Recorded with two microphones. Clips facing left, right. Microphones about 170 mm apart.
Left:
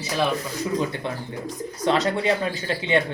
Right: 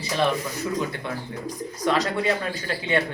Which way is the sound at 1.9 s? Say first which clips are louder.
Left 2 dB; 25° left (ahead or behind).